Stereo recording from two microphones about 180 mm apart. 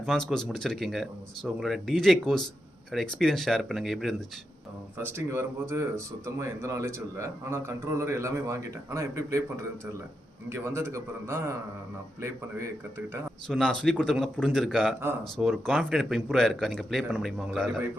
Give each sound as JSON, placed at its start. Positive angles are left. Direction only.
{"t": 0.0, "sound": "a man's voice", "side_deg": 0}
{"t": 4.9, "sound": "a man's voice", "side_deg": -15}
{"t": 10.5, "sound": "a man's voice", "side_deg": -15}
{"t": 13.5, "sound": "a man's voice", "side_deg": 5}